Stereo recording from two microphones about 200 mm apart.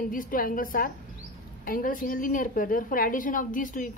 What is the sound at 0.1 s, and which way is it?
A woman's voice, 45° left (ahead or behind).